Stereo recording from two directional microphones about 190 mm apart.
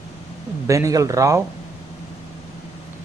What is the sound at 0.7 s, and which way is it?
Speech, 15° right (ahead or behind).